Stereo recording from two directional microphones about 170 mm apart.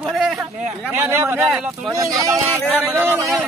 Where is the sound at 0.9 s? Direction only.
15° right (ahead or behind).